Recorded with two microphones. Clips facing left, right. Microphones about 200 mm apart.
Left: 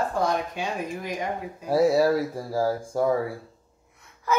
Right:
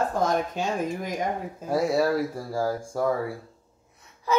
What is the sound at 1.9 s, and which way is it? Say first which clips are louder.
Speech: left 2 dB; 30° left (ahead or behind).